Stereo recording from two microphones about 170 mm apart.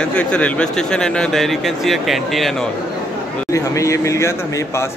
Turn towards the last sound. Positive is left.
turn(degrees=15)  # may be behind; listen again after turning